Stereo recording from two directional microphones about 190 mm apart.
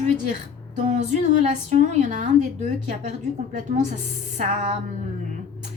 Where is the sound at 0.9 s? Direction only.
40° right (ahead or behind).